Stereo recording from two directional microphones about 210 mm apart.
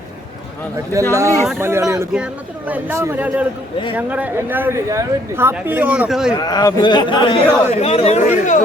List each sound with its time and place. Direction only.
1.1 s speech: 15° right (ahead or behind)
6.4 s speech: 20° left (ahead or behind); by 8.6 s 40° left (ahead or behind)